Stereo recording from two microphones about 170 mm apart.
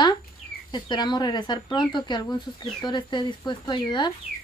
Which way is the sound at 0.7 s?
25° left (ahead or behind).